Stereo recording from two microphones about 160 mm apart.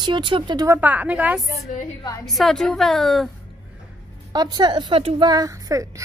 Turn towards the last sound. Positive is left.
turn(degrees=-20)  # may be behind; listen again after turning